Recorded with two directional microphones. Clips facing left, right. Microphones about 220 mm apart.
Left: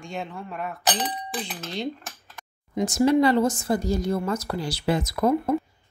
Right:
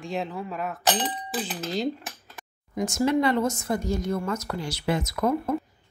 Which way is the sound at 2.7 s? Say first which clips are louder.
Left 4 dB; 35° left (ahead or behind).